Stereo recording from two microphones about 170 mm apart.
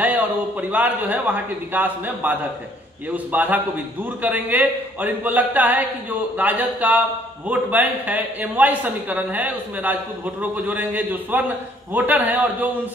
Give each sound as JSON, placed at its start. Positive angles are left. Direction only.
{"t": 0.0, "sound": "a man's voice", "side_deg": -10}